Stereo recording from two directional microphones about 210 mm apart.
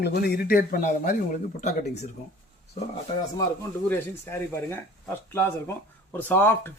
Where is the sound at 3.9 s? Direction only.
10° left (ahead or behind).